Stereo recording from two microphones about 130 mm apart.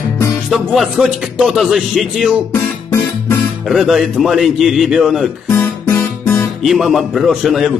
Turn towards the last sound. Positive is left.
turn(degrees=-5)  # may be behind; listen again after turning